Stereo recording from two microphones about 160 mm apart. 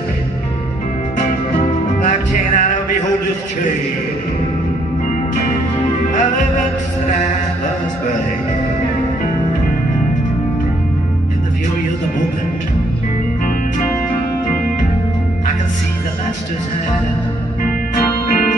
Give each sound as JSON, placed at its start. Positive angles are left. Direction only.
{"t": 2.0, "sound": "music", "side_deg": 50}